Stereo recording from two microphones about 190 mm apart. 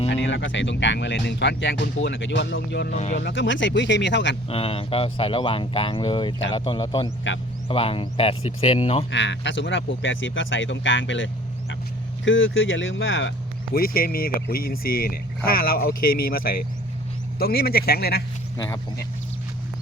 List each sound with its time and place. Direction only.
0.1 s speech: 70° left (ahead or behind)
2.9 s speech: 35° left (ahead or behind)
3.2 s speech: 70° left (ahead or behind)
4.4 s speech: 30° left (ahead or behind)
9.0 s speech: 70° left (ahead or behind)
12.2 s speech: 90° left
13.7 s speech: 50° left (ahead or behind)
18.5 s speech: 20° left (ahead or behind)